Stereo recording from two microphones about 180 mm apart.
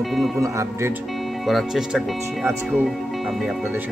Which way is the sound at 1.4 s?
Centre (ahead or behind).